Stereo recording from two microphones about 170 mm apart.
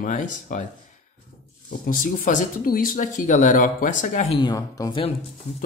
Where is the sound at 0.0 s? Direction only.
45° left (ahead or behind).